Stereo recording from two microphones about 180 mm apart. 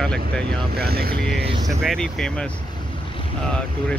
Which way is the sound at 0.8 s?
60° right (ahead or behind).